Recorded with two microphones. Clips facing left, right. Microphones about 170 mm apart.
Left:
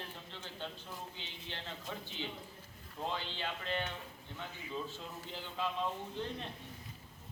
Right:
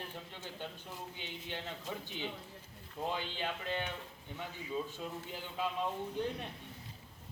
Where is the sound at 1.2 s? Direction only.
15° right (ahead or behind).